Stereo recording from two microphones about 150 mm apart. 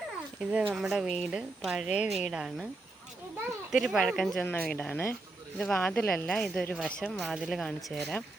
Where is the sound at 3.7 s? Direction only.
5° right (ahead or behind).